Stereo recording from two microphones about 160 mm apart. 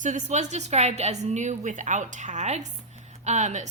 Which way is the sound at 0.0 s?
50° right (ahead or behind).